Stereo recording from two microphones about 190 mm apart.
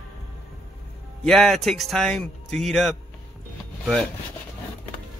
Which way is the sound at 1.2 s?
Centre (ahead or behind).